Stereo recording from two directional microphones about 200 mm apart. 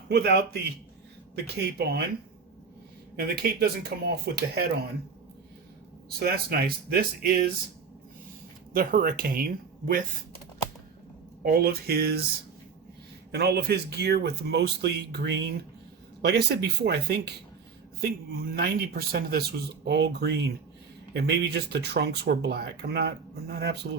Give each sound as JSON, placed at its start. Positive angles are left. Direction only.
{"t": 0.1, "sound": "speech", "side_deg": -55}
{"t": 1.5, "sound": "speech", "side_deg": -55}
{"t": 3.2, "sound": "speech", "side_deg": -50}
{"t": 6.1, "sound": "speech", "side_deg": -50}
{"t": 8.7, "sound": "speech", "side_deg": -45}
{"t": 11.4, "sound": "speech", "side_deg": -50}
{"t": 13.3, "sound": "speech", "side_deg": -55}